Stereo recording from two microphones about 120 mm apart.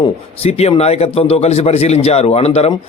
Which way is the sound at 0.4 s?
60° left (ahead or behind).